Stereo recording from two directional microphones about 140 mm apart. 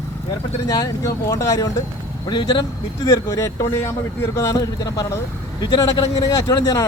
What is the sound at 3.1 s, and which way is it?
A man's voice, 20° left (ahead or behind).